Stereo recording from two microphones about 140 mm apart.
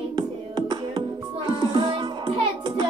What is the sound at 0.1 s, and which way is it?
Music, 30° right (ahead or behind).